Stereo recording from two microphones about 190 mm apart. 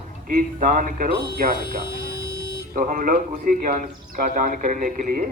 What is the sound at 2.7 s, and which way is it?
A man's voice, 45° right (ahead or behind).